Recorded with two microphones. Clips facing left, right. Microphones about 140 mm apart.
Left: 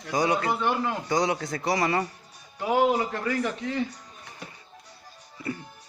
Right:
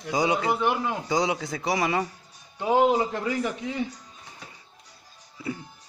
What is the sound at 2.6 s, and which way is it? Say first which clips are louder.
A man's voice: right 2 dB; 25° right (ahead or behind).